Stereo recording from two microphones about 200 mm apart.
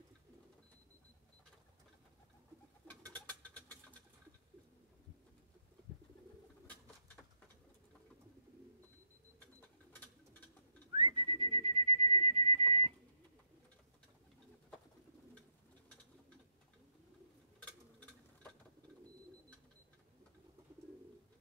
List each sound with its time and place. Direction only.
2.9 s bird: 10° left (ahead or behind)
10.9 s whistling: 25° right (ahead or behind)